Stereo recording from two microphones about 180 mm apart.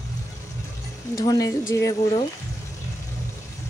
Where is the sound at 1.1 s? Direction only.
20° left (ahead or behind).